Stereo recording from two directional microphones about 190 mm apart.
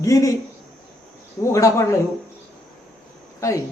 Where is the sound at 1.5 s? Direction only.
15° left (ahead or behind).